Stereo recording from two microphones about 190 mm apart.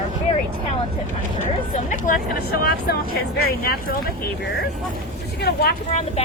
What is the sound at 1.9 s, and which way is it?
Speech, 50° left (ahead or behind).